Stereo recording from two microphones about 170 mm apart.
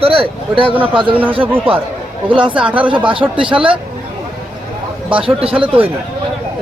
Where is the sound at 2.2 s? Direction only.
30° right (ahead or behind).